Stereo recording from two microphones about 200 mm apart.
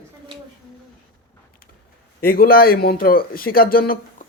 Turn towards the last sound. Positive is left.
turn(degrees=45)  # may be behind; listen again after turning